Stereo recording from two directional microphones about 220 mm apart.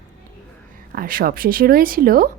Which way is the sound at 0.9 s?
40° right (ahead or behind).